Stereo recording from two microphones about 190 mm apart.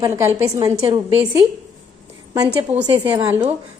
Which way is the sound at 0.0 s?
15° right (ahead or behind).